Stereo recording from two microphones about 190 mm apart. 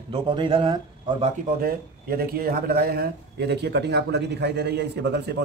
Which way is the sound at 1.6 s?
50° right (ahead or behind).